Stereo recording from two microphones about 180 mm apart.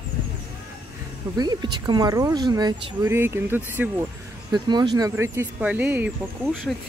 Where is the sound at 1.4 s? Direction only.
25° right (ahead or behind).